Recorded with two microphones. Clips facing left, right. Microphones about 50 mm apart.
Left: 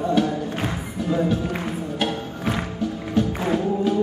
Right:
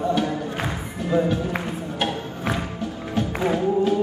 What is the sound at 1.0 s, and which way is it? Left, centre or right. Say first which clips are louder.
Music: right 1 dB; centre.